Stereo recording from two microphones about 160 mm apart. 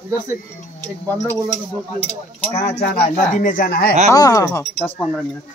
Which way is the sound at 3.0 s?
55° left (ahead or behind).